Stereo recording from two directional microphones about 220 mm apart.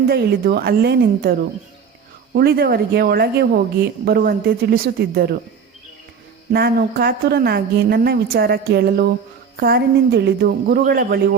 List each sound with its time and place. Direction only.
0.1 s a woman's voice: 45° right (ahead or behind)
6.5 s a woman's voice: 45° right (ahead or behind)